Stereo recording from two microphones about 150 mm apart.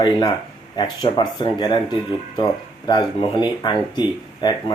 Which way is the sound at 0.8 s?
30° left (ahead or behind).